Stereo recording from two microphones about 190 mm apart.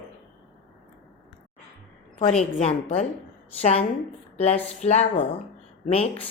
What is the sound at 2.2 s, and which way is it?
A woman's voice, 30° left (ahead or behind).